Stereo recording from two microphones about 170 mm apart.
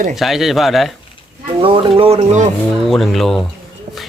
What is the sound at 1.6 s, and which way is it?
Speech, 30° right (ahead or behind).